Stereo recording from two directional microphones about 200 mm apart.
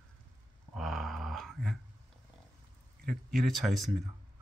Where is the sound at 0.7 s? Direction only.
Centre (ahead or behind).